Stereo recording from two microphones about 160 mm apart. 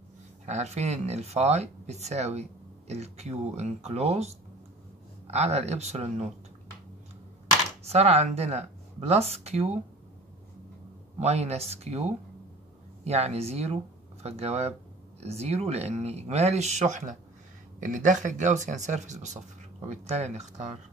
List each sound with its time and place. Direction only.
0.5 s speech: 45° right (ahead or behind)
5.3 s speech: 45° right (ahead or behind)
7.8 s speech: 40° right (ahead or behind)
11.1 s speech: 45° right (ahead or behind)